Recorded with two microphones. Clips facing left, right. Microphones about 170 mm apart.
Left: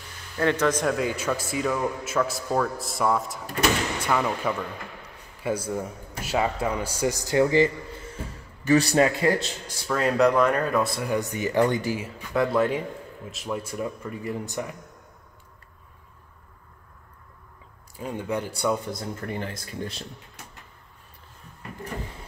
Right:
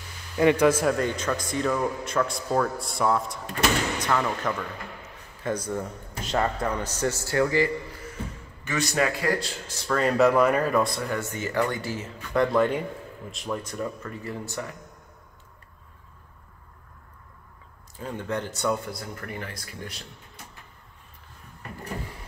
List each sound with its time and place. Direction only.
0.4 s a man's voice: 10° right (ahead or behind)
0.9 s a man's voice: 5° left (ahead or behind)
8.6 s speech: 30° left (ahead or behind)
9.8 s a man's voice: 5° left (ahead or behind)
11.1 s speech: 15° left (ahead or behind)
17.9 s speech: 10° left (ahead or behind); by 20.1 s 30° left (ahead or behind)